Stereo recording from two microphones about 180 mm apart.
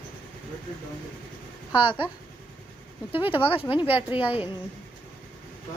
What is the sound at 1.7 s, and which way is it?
Speech, 25° left (ahead or behind).